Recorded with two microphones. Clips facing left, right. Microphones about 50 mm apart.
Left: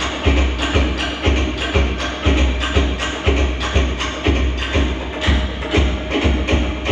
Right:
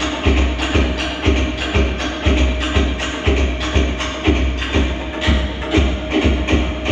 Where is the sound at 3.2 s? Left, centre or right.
Left.